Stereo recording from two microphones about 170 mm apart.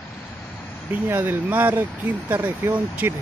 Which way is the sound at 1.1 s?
10° right (ahead or behind).